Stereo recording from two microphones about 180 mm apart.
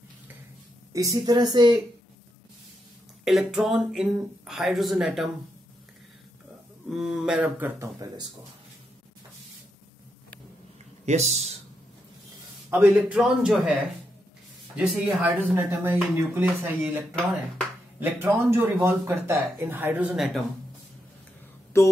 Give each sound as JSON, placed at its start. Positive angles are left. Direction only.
{"t": 0.9, "sound": "speech", "side_deg": -20}
{"t": 3.3, "sound": "speech", "side_deg": 0}
{"t": 6.9, "sound": "speech", "side_deg": -5}
{"t": 11.1, "sound": "speech", "side_deg": -40}
{"t": 12.6, "sound": "speech", "side_deg": -5}
{"t": 14.8, "sound": "speech", "side_deg": -10}
{"t": 17.2, "sound": "speech", "side_deg": 0}
{"t": 17.9, "sound": "speech", "side_deg": -10}